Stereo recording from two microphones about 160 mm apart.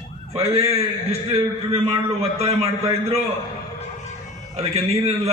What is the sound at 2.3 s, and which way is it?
Speech, 40° right (ahead or behind).